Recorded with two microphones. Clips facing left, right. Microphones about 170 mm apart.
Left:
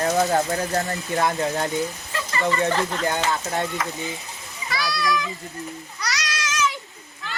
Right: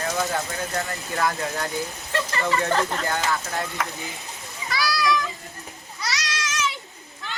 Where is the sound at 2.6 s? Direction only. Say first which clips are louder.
Left 1 dB; 20° left (ahead or behind).